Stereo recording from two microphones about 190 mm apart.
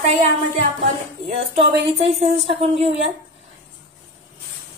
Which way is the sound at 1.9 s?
30° right (ahead or behind).